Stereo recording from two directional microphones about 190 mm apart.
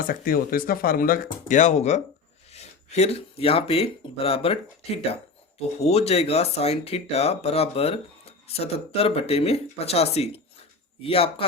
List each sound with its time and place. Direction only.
0.1 s speech: 50° left (ahead or behind); by 11.4 s 30° left (ahead or behind)